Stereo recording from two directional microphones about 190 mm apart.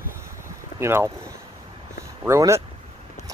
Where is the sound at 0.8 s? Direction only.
15° right (ahead or behind).